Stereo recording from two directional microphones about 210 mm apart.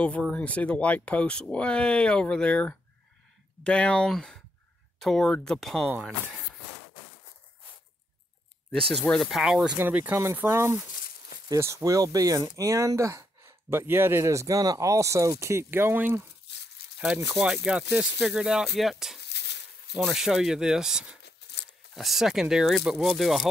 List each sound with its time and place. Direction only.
0.0 s speech: 5° left (ahead or behind)
8.9 s speech: 5° left (ahead or behind)
16.4 s a sound: 55° left (ahead or behind)
17.3 s speech: 5° right (ahead or behind)
19.2 s a sound: 55° left (ahead or behind)
19.9 s speech: centre (ahead or behind)
21.2 s coin: 55° left (ahead or behind)
21.9 s speech: centre (ahead or behind)